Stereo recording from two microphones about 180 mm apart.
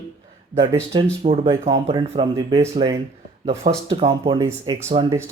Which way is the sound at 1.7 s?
25° right (ahead or behind).